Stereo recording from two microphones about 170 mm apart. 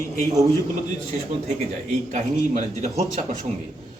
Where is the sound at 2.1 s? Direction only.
45° right (ahead or behind).